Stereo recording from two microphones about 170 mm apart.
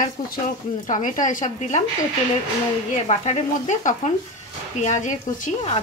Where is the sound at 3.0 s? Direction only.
40° left (ahead or behind).